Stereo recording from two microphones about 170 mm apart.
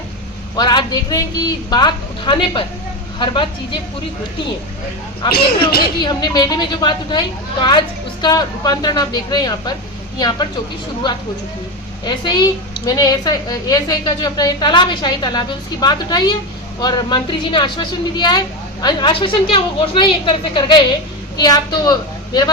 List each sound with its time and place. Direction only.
0.5 s a woman's voice: 25° left (ahead or behind)
6.0 s a woman's voice: 25° left (ahead or behind)
12.0 s a woman's voice: 25° left (ahead or behind)